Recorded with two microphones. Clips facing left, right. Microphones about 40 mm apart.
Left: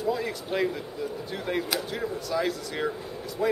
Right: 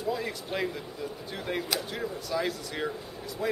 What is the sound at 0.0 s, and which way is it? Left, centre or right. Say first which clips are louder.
A man's voice: left 3 dB; centre.